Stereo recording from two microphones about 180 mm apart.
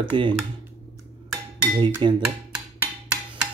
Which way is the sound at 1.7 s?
25° right (ahead or behind).